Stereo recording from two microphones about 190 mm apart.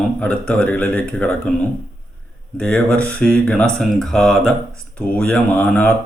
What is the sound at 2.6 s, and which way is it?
Speech, 5° left (ahead or behind).